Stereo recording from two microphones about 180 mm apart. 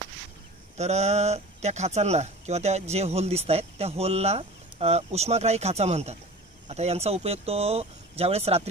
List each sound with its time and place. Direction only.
0.7 s speech: 40° right (ahead or behind)